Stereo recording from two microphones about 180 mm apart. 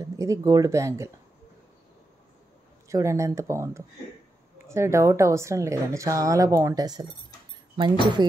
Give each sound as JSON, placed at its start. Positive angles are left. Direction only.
{"t": 0.0, "sound": "speech", "side_deg": -15}
{"t": 2.9, "sound": "speech", "side_deg": -15}